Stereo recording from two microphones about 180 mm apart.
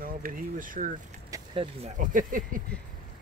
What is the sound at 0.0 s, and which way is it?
Speech, 50° right (ahead or behind).